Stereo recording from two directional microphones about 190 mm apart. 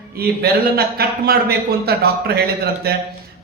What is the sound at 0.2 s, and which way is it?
A man's voice, 55° right (ahead or behind).